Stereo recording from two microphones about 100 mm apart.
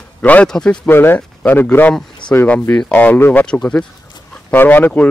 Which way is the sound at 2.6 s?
5° left (ahead or behind).